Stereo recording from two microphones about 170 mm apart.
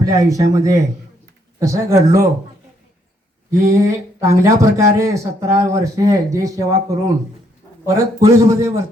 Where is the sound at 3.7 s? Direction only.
20° right (ahead or behind).